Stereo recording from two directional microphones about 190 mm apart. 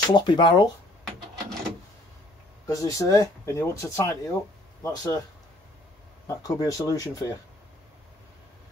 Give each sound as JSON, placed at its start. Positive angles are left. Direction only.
{"t": 0.1, "sound": "speech", "side_deg": 25}
{"t": 2.6, "sound": "speech", "side_deg": 15}
{"t": 6.2, "sound": "speech", "side_deg": 20}